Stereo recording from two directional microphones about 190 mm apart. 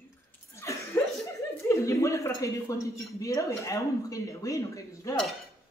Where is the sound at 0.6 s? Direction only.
15° left (ahead or behind).